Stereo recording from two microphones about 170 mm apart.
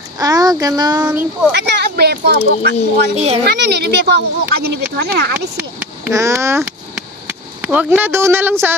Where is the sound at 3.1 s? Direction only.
40° right (ahead or behind).